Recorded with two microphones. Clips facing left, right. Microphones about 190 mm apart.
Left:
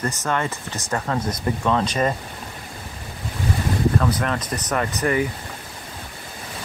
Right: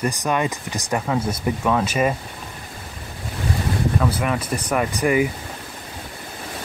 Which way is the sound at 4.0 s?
10° right (ahead or behind).